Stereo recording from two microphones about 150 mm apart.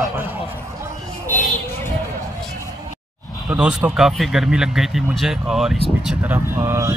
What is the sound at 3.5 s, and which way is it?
Speech, 5° right (ahead or behind).